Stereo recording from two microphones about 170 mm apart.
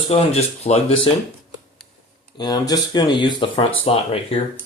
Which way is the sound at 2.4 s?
25° left (ahead or behind).